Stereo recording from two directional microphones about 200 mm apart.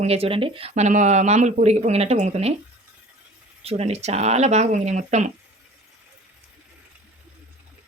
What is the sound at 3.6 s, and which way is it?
Speech, 30° right (ahead or behind).